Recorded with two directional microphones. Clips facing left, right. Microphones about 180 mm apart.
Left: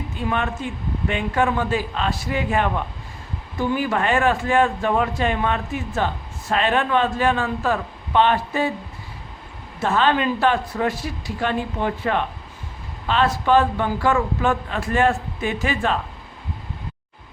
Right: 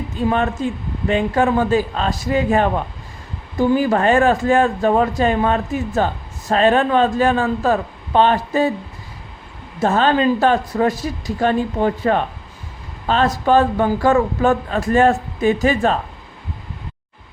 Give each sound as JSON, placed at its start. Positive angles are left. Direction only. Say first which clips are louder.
{"t": 0.3, "sound": "a man's voice", "louder": "right 6 dB", "side_deg": -40}
{"t": 9.8, "sound": "a man's voice", "louder": "right 4 dB", "side_deg": -40}